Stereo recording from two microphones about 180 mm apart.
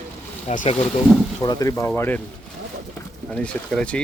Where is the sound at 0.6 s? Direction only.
35° left (ahead or behind).